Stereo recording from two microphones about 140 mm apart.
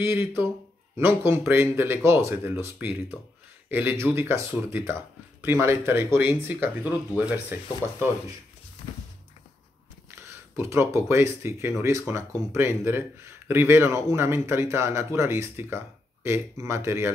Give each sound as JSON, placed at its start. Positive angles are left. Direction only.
{"t": 0.0, "sound": "speech", "side_deg": -15}
{"t": 10.5, "sound": "speech", "side_deg": -20}